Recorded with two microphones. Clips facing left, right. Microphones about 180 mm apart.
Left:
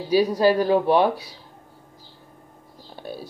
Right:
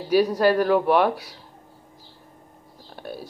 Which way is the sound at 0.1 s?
10° left (ahead or behind).